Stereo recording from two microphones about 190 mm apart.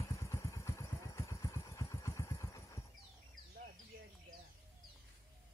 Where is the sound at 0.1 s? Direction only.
15° left (ahead or behind).